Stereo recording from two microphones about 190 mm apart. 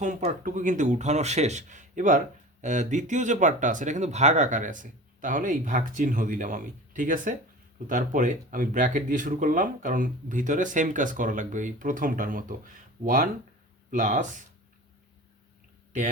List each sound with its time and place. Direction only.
0.0 s speech: 40° right (ahead or behind)